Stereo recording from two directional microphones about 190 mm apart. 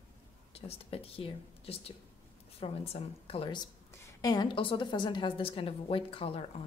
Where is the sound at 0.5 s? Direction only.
30° left (ahead or behind).